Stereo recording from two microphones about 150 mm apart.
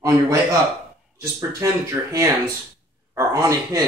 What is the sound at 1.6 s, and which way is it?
Speech, 20° right (ahead or behind).